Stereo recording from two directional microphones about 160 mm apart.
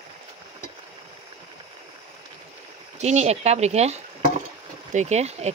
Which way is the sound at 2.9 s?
45° right (ahead or behind).